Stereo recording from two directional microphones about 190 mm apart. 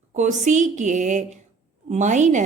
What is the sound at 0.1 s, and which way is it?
Speech, 40° right (ahead or behind).